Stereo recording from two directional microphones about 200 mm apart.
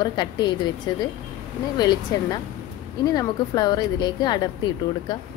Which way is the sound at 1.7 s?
20° left (ahead or behind).